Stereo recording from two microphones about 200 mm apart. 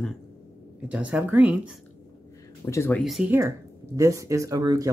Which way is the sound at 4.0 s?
15° right (ahead or behind).